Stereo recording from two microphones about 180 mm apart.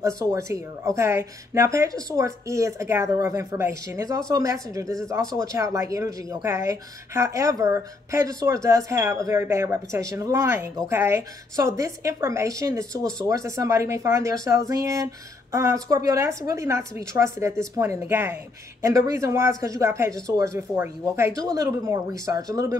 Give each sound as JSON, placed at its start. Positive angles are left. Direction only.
{"t": 0.0, "sound": "a woman's voice", "side_deg": -15}